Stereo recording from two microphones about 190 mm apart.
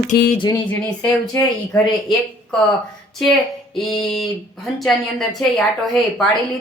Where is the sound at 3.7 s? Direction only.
Centre (ahead or behind).